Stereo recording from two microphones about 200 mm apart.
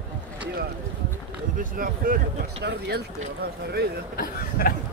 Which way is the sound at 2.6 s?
55° right (ahead or behind).